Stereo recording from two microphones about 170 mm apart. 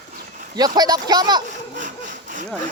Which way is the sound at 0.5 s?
25° right (ahead or behind).